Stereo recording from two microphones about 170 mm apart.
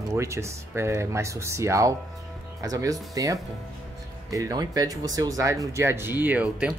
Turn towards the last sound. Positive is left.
turn(degrees=-5)  # may be behind; listen again after turning